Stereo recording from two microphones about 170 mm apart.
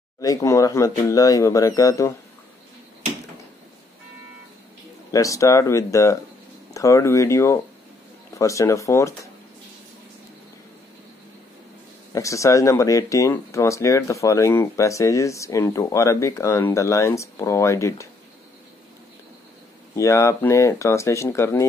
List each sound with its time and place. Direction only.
0.2 s speech: 20° left (ahead or behind)
5.1 s speech: 20° left (ahead or behind)
12.1 s speech: 20° left (ahead or behind)
20.0 s speech: 15° left (ahead or behind)